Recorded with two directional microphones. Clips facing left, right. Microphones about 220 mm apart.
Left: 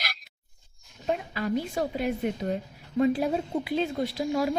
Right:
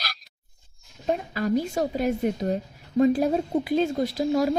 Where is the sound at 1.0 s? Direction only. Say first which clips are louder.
Right 3 dB; 40° right (ahead or behind).